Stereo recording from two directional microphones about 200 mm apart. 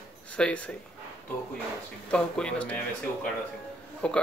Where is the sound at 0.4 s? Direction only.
5° left (ahead or behind).